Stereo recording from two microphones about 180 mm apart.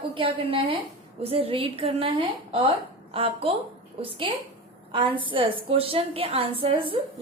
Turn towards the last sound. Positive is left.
turn(degrees=-30)  # may be behind; listen again after turning